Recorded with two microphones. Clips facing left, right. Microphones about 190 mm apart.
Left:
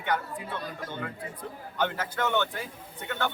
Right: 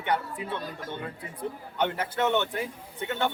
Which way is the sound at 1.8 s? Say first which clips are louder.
Right 2 dB; 25° right (ahead or behind).